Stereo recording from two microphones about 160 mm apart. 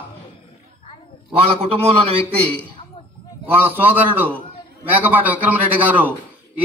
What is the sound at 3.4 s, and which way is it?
A man's voice, 10° right (ahead or behind).